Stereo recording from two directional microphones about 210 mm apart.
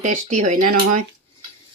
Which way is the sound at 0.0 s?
35° right (ahead or behind).